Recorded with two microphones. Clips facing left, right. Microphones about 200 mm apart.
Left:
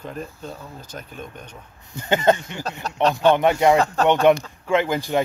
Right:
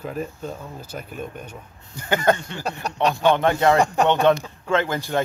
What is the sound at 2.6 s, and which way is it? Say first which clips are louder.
Speech: left 1 dB; 10° right (ahead or behind).